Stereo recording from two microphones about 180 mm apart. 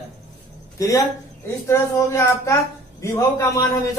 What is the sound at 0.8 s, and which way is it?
A man's voice, 20° left (ahead or behind).